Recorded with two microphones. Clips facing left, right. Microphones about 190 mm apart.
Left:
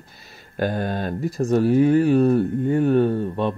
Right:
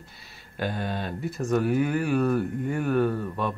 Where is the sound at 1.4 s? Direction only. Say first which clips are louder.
Left 7 dB; 30° left (ahead or behind).